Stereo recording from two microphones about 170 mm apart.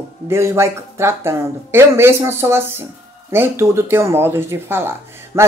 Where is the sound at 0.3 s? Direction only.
15° right (ahead or behind).